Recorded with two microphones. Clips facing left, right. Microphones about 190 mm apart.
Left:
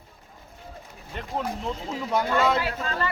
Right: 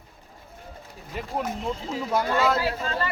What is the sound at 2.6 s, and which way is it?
Speech, 30° right (ahead or behind).